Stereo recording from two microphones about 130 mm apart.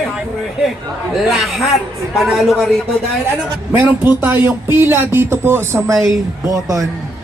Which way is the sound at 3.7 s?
15° right (ahead or behind).